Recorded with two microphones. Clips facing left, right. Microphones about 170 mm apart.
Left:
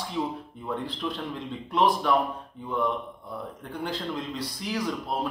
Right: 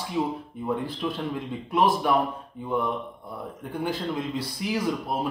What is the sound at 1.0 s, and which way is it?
Speech, 10° right (ahead or behind).